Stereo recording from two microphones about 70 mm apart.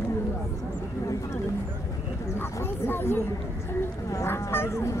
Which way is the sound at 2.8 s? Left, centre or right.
Left.